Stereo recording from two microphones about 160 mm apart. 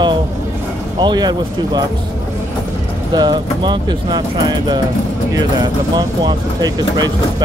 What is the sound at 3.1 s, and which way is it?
Speech, 25° right (ahead or behind).